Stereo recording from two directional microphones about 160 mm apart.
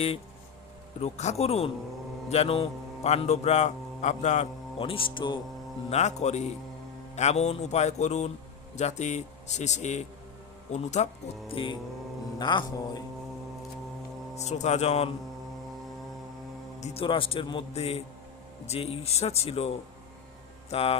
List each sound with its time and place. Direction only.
0.9 s a man's voice: 45° left (ahead or behind)
4.8 s a man's voice: 35° left (ahead or behind)
5.9 s a man's voice: 45° left (ahead or behind); by 13.0 s 25° left (ahead or behind)
14.3 s a man's voice: 45° left (ahead or behind)
16.8 s a man's voice: 35° left (ahead or behind)